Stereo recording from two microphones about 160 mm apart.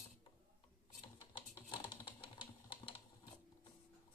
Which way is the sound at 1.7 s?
30° left (ahead or behind).